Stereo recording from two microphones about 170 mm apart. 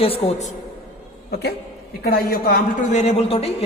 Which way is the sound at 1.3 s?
70° left (ahead or behind).